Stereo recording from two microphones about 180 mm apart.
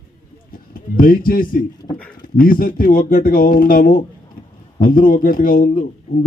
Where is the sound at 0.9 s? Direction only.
50° left (ahead or behind).